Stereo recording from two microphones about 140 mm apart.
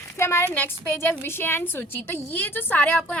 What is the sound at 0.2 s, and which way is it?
A woman's voice, 20° left (ahead or behind).